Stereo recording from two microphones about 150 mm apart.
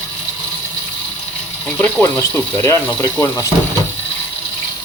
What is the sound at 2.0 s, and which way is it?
Speech, 15° left (ahead or behind).